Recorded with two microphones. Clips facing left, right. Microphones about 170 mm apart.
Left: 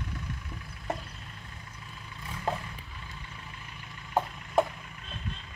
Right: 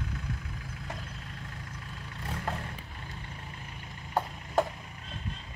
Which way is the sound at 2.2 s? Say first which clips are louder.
Right 4 dB; 60° right (ahead or behind).